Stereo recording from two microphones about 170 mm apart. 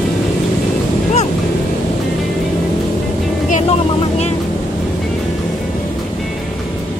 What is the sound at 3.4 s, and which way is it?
Vehicle, 40° left (ahead or behind).